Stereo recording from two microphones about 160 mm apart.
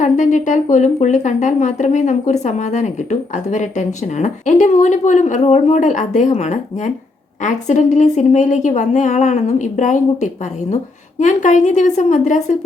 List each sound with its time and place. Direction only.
0.0 s a woman's voice: 50° left (ahead or behind)